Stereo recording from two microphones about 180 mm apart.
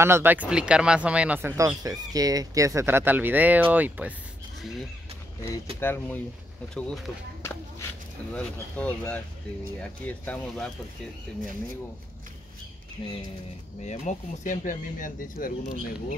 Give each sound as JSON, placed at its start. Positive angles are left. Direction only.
{"t": 0.0, "sound": "speech", "side_deg": -10}
{"t": 5.8, "sound": "speech", "side_deg": 10}
{"t": 8.3, "sound": "speech", "side_deg": 5}
{"t": 13.8, "sound": "speech", "side_deg": 40}